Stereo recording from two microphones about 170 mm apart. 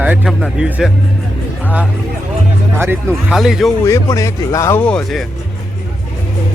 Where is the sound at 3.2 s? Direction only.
5° right (ahead or behind).